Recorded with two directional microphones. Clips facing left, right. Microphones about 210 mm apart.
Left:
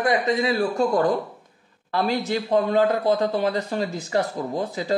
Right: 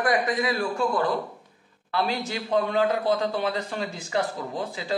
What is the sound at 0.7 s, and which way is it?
A man's voice, 40° left (ahead or behind).